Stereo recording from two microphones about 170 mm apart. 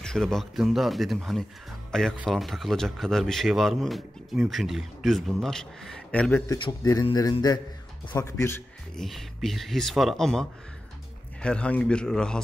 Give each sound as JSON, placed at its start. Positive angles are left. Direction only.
{"t": 0.0, "sound": "a man's voice", "side_deg": 5}
{"t": 6.5, "sound": "a man's voice", "side_deg": 20}
{"t": 8.9, "sound": "a man's voice", "side_deg": 0}
{"t": 11.4, "sound": "a man's voice", "side_deg": 5}